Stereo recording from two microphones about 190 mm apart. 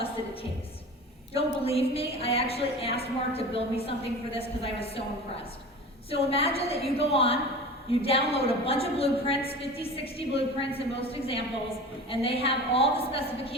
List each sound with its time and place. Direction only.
1.3 s a woman's voice: 30° left (ahead or behind)
6.1 s a woman's voice: 30° left (ahead or behind)